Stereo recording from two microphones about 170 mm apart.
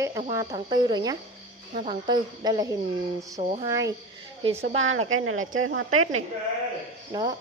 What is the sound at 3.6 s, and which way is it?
Speech, 20° right (ahead or behind).